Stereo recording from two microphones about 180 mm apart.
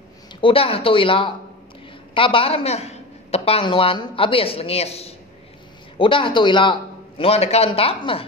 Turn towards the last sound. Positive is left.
turn(degrees=30)  # may be behind; listen again after turning